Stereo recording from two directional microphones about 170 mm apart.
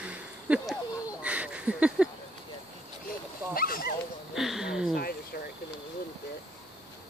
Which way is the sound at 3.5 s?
60° left (ahead or behind).